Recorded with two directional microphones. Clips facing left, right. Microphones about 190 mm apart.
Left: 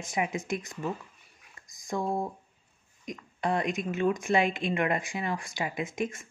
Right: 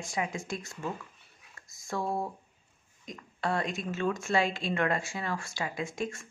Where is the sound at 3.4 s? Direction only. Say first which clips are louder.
Left 3 dB; 15° left (ahead or behind).